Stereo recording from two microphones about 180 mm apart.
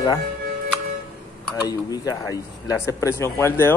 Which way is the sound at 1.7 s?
20° left (ahead or behind).